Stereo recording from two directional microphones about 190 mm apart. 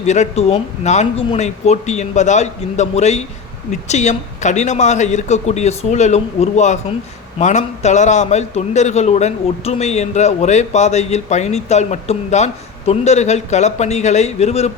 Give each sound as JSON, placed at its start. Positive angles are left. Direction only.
{"t": 0.0, "sound": "a man's voice", "side_deg": 35}